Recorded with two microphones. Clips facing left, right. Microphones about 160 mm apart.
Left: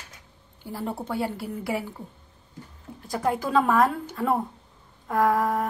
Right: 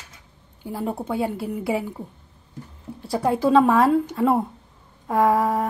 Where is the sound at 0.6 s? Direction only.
20° right (ahead or behind).